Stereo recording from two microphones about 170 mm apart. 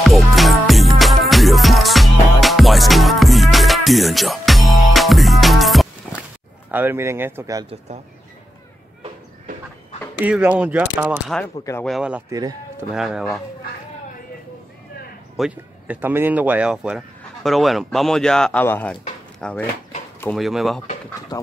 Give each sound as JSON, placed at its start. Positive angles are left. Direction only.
{"t": 0.0, "sound": "music", "side_deg": 0}
{"t": 6.7, "sound": "speech", "side_deg": -10}
{"t": 10.2, "sound": "speech", "side_deg": -10}
{"t": 11.4, "sound": "speech", "side_deg": 15}
{"t": 11.8, "sound": "speech", "side_deg": -5}
{"t": 12.3, "sound": "speech", "side_deg": -20}
{"t": 12.9, "sound": "speech", "side_deg": -5}
{"t": 15.3, "sound": "speech", "side_deg": -5}
{"t": 21.3, "sound": "speech", "side_deg": 20}